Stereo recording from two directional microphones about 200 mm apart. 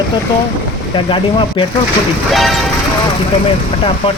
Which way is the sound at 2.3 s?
Centre (ahead or behind).